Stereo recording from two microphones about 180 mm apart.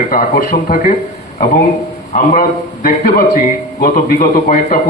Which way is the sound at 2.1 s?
50° left (ahead or behind).